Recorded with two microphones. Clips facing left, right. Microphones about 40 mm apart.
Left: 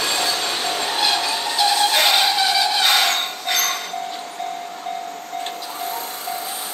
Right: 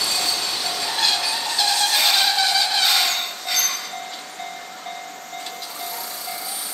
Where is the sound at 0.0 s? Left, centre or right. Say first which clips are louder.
Left 3 dB; left.